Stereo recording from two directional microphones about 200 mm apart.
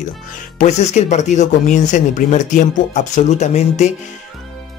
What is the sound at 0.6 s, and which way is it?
Speech, 35° left (ahead or behind).